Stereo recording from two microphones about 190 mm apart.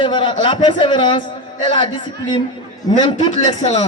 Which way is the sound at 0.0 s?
25° left (ahead or behind).